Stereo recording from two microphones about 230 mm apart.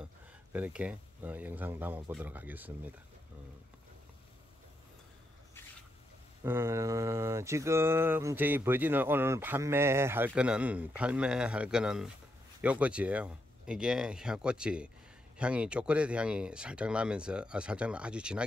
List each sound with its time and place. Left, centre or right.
0.0 s speech: centre
6.4 s a sound: centre
12.6 s speech: centre